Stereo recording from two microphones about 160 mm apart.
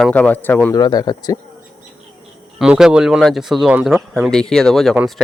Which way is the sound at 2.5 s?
5° right (ahead or behind).